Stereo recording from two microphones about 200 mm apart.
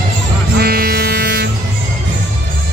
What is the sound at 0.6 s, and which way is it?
Music, 50° right (ahead or behind).